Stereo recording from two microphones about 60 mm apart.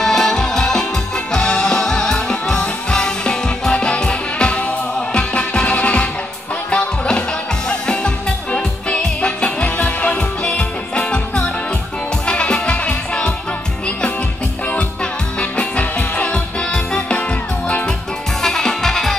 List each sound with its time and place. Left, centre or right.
0.0 s music: centre
15.3 s music: centre
18.4 s music: centre